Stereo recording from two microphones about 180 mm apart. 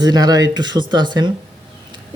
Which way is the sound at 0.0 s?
20° right (ahead or behind).